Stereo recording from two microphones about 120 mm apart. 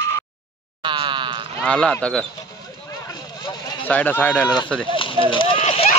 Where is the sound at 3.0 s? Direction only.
35° left (ahead or behind).